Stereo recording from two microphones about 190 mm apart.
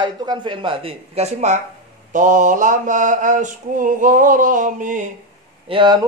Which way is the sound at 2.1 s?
40° right (ahead or behind).